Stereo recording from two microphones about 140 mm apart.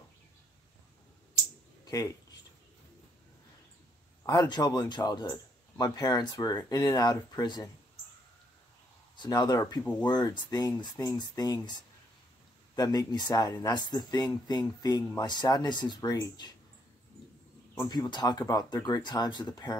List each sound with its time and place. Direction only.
4.3 s speech: 30° left (ahead or behind)
9.1 s speech: 30° left (ahead or behind)
17.7 s speech: 30° left (ahead or behind)